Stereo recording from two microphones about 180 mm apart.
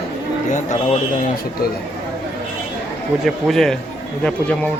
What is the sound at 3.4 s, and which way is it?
Speech, centre (ahead or behind).